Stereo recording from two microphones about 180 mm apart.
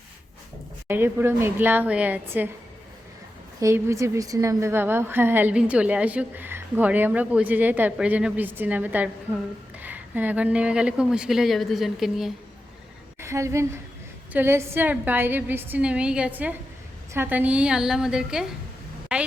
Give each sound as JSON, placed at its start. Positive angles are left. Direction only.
{"t": 0.9, "sound": "a woman's voice", "side_deg": -10}
{"t": 3.6, "sound": "a woman's voice", "side_deg": -15}
{"t": 13.1, "sound": "a woman's voice", "side_deg": -15}